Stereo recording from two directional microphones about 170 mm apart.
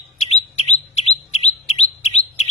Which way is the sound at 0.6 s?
40° left (ahead or behind).